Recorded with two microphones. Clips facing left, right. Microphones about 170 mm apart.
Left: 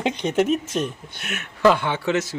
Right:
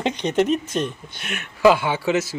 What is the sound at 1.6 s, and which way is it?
Speech, 10° right (ahead or behind).